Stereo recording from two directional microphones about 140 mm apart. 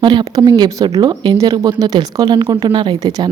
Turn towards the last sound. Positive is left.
turn(degrees=-30)  # may be behind; listen again after turning